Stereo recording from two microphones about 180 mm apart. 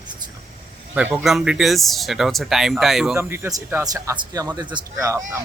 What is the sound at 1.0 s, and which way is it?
Speech, 5° right (ahead or behind).